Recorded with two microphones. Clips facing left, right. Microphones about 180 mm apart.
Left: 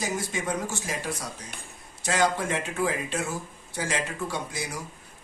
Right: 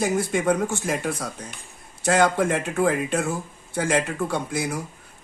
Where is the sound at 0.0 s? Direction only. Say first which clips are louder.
Right 8 dB; 55° right (ahead or behind).